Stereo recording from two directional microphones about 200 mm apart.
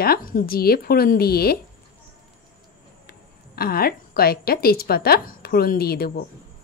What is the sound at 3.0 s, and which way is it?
A woman's voice, 50° left (ahead or behind).